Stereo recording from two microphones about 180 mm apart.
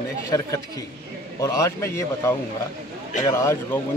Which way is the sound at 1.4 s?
20° left (ahead or behind).